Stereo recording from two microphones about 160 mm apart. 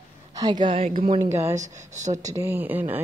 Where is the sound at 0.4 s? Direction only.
30° right (ahead or behind).